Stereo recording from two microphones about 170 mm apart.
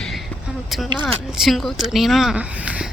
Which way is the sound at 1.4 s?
Centre (ahead or behind).